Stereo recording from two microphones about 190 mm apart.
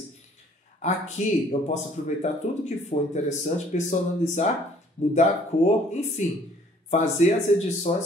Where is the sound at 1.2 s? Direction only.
40° left (ahead or behind).